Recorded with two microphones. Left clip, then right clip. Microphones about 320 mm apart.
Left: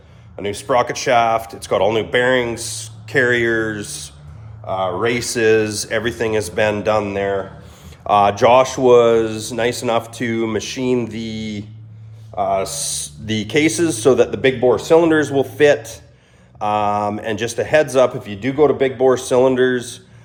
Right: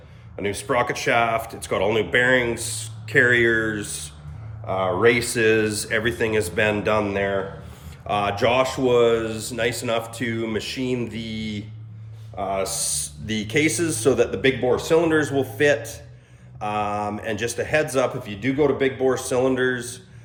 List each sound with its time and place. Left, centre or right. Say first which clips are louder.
0.3 s speech: left 5 dB; centre
7.9 s speech: left 9 dB; centre